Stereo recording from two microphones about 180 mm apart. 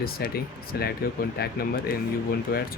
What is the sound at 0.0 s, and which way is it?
Speech, 55° left (ahead or behind).